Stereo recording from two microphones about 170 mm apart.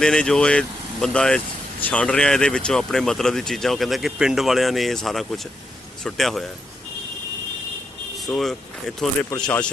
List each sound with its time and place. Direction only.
0.0 s speech: 5° left (ahead or behind)
8.2 s speech: centre (ahead or behind)